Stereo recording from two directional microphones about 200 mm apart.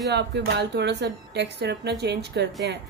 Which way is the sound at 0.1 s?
55° right (ahead or behind).